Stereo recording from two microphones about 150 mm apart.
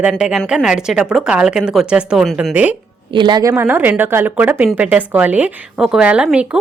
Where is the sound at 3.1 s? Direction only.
30° right (ahead or behind).